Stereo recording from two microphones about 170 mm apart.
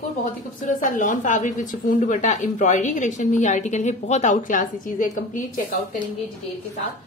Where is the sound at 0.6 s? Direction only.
50° left (ahead or behind).